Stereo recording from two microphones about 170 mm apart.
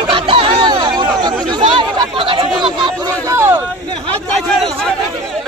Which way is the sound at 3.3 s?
15° right (ahead or behind).